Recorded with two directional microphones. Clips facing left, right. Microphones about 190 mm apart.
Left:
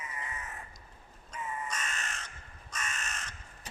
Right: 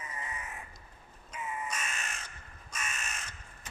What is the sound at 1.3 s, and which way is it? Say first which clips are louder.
Crow: even; 10° right (ahead or behind).